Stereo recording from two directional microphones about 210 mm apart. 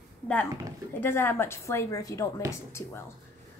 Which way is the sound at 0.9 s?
10° left (ahead or behind).